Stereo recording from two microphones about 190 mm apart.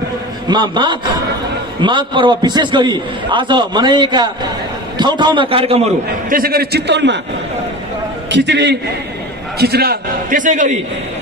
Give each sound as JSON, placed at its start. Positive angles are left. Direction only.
{"t": 0.5, "sound": "a man's voice", "side_deg": -25}
{"t": 6.2, "sound": "a man's voice", "side_deg": -50}
{"t": 8.3, "sound": "a man's voice", "side_deg": -65}